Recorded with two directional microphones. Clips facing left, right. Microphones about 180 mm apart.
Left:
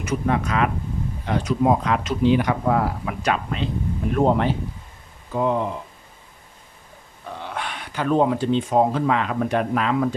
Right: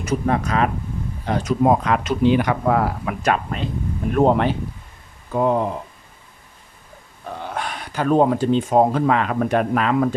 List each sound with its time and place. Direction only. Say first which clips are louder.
0.0 s speech: right 2 dB; 35° right (ahead or behind); by 3.2 s 65° right (ahead or behind)
3.2 s speech: right 3 dB; 45° right (ahead or behind)
4.1 s speech: right 3 dB; 65° right (ahead or behind)
5.3 s speech: right 3 dB; 45° right (ahead or behind)
7.4 s speech: right 2 dB; 40° right (ahead or behind)